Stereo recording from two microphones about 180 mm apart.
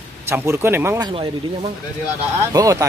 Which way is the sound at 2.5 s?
20° right (ahead or behind).